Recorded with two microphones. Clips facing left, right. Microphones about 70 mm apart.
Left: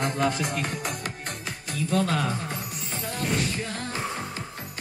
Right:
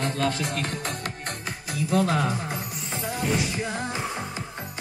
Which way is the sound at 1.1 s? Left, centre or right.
Centre.